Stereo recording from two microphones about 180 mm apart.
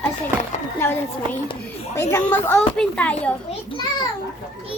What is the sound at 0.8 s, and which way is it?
Speech, 10° left (ahead or behind).